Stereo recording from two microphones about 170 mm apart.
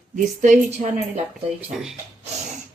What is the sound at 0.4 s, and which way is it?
Speech, 45° right (ahead or behind).